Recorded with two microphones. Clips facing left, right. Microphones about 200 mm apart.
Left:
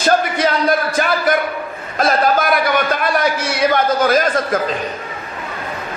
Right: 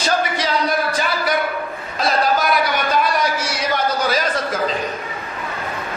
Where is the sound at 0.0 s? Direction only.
55° left (ahead or behind).